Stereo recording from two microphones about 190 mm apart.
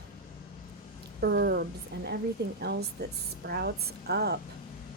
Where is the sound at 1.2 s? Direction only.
60° right (ahead or behind).